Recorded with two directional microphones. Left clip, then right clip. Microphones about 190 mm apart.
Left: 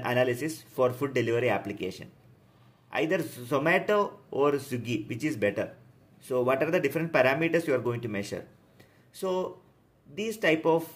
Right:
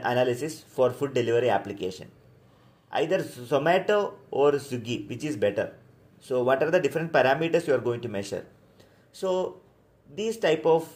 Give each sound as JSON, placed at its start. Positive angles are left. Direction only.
{"t": 0.0, "sound": "speech", "side_deg": 25}